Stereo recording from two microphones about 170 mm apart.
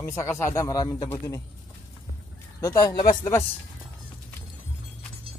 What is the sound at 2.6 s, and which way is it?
Speech, 20° left (ahead or behind).